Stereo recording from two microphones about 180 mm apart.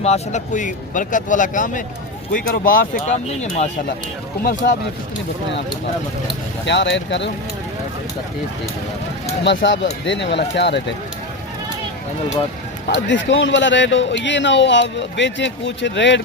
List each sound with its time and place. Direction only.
0.0 s a man's voice: 40° left (ahead or behind)
4.4 s a man's voice: 50° left (ahead or behind)
6.7 s a man's voice: 80° left
9.6 s speech: 90° left; by 10.8 s 75° left (ahead or behind)
12.9 s a man's voice: 80° left